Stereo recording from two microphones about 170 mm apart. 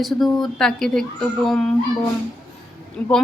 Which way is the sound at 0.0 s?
Centre (ahead or behind).